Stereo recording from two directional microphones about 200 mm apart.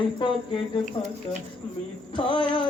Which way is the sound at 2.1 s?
25° left (ahead or behind).